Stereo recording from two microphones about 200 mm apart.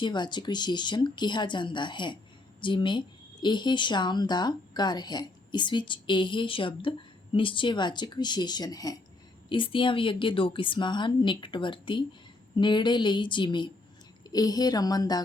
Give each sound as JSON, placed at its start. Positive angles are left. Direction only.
{"t": 0.0, "sound": "speech", "side_deg": 20}